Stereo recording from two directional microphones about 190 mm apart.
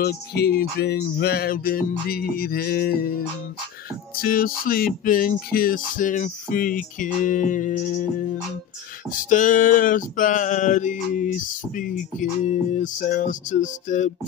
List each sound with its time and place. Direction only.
0.0 s music: 55° left (ahead or behind)
9.1 s music: 45° left (ahead or behind)